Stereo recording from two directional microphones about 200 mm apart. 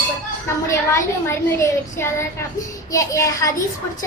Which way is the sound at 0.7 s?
15° left (ahead or behind).